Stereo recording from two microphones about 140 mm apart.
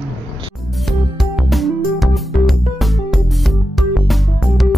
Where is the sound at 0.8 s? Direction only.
Centre (ahead or behind).